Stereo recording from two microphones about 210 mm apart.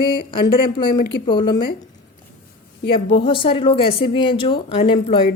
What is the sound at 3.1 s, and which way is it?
Speech, 25° left (ahead or behind).